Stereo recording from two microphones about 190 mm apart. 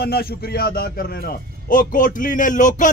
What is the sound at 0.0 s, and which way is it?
A man's voice, 55° left (ahead or behind).